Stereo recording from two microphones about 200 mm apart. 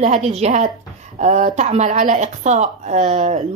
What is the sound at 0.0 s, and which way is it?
Speech, 35° right (ahead or behind).